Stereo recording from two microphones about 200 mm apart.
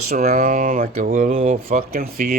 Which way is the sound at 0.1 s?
45° right (ahead or behind).